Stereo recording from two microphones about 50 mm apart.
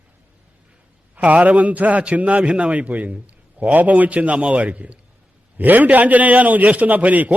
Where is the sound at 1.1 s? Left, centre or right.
Right.